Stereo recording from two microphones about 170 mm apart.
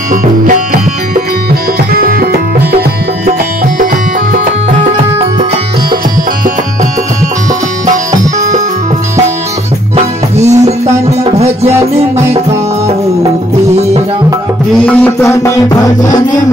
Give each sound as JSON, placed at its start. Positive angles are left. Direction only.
{"t": 0.1, "sound": "music", "side_deg": -50}
{"t": 8.1, "sound": "music", "side_deg": -20}
{"t": 10.4, "sound": "music", "side_deg": -40}
{"t": 14.8, "sound": "music", "side_deg": 10}